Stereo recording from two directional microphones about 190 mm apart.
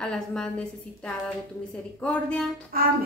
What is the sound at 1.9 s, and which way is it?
Speech, 5° left (ahead or behind).